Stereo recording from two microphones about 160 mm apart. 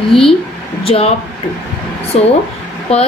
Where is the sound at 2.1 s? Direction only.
40° left (ahead or behind).